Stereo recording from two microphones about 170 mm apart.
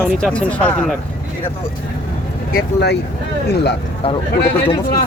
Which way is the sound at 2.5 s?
80° left.